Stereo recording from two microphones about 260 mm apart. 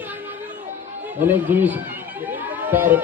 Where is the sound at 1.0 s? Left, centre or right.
Centre.